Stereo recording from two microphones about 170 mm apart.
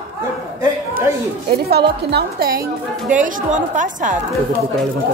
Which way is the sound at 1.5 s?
70° right (ahead or behind).